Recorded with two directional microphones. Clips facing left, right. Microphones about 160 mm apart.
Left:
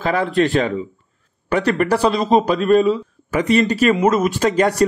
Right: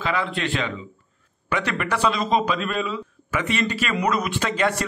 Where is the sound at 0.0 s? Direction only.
40° left (ahead or behind).